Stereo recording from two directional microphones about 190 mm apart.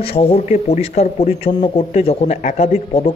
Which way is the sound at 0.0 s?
30° left (ahead or behind).